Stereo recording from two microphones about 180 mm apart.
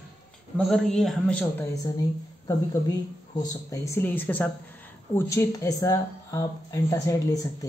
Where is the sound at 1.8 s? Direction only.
20° left (ahead or behind).